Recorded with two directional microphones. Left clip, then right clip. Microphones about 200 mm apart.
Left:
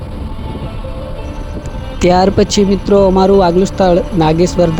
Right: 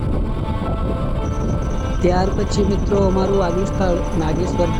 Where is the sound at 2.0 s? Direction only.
50° left (ahead or behind).